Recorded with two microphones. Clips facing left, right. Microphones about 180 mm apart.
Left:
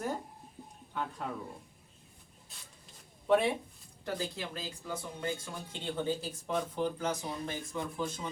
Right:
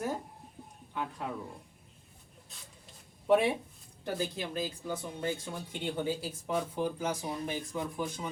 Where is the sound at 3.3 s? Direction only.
10° right (ahead or behind).